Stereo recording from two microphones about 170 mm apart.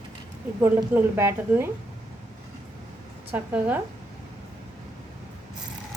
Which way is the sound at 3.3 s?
10° right (ahead or behind).